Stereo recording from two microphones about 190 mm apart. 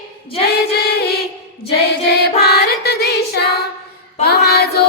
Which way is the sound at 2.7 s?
60° left (ahead or behind).